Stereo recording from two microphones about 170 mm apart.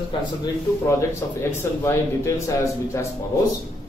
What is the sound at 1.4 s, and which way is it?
A man's voice, 15° left (ahead or behind).